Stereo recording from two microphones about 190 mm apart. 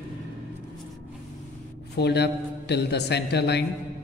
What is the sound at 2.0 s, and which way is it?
A man's voice, 60° left (ahead or behind).